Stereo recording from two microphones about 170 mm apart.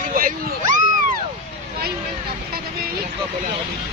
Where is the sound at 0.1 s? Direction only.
55° right (ahead or behind).